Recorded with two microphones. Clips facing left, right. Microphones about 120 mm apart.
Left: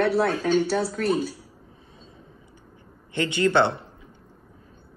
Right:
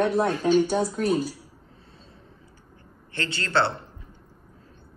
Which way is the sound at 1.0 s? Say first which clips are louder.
Even; 60° left (ahead or behind).